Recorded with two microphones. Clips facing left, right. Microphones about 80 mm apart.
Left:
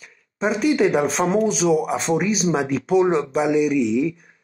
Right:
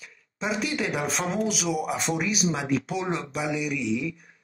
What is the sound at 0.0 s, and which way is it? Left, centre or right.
A man's voice, left.